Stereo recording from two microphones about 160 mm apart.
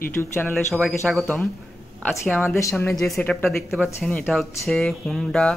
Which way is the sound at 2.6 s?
15° left (ahead or behind).